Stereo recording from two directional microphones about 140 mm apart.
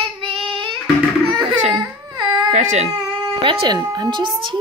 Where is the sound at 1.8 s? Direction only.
30° right (ahead or behind).